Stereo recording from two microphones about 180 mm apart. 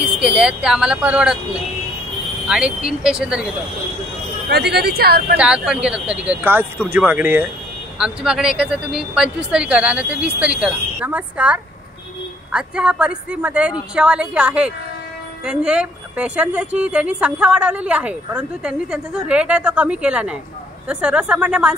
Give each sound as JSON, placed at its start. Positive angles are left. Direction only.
{"t": 0.2, "sound": "a woman's voice", "side_deg": -5}
{"t": 2.4, "sound": "a woman's voice", "side_deg": -5}
{"t": 4.5, "sound": "speech", "side_deg": -65}
{"t": 5.4, "sound": "a woman's voice", "side_deg": -5}